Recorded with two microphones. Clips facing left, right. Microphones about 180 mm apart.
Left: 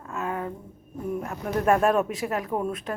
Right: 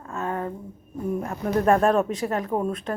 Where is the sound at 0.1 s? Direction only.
35° right (ahead or behind).